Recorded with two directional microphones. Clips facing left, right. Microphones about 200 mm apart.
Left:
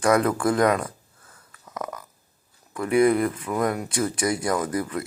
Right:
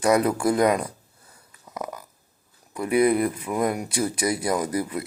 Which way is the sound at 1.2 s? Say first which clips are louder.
Left 2 dB; 20° right (ahead or behind).